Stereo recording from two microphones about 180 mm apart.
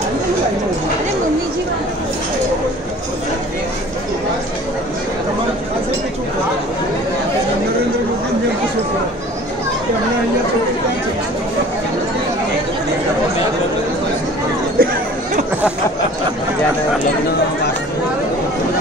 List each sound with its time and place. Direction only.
14.8 s chatter: 55° right (ahead or behind)